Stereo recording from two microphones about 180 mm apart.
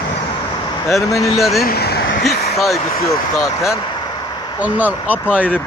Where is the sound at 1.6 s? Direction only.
60° left (ahead or behind).